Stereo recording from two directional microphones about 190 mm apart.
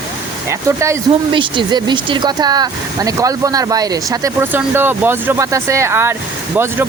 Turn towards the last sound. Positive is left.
turn(degrees=-10)  # may be behind; listen again after turning